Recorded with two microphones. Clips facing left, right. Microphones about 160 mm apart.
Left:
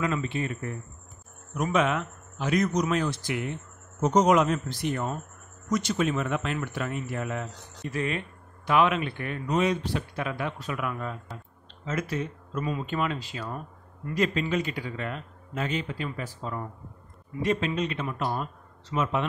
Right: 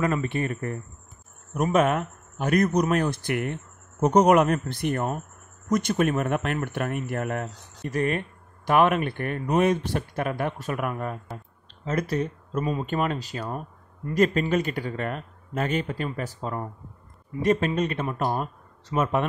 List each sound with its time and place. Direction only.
0.0 s speech: 50° right (ahead or behind)